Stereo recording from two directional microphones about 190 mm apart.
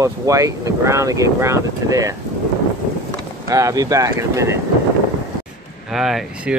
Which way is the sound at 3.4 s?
15° right (ahead or behind).